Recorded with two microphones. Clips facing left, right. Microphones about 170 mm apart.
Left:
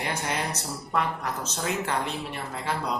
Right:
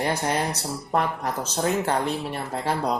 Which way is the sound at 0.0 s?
40° right (ahead or behind).